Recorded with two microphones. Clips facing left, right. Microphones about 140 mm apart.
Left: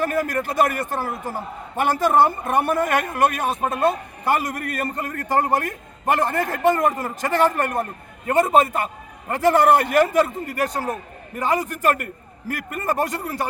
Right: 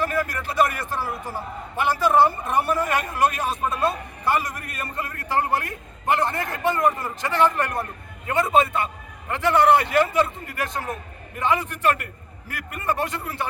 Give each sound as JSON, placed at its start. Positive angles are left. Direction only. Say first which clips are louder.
{"t": 0.0, "sound": "a man's voice", "louder": "left 3 dB", "side_deg": 45}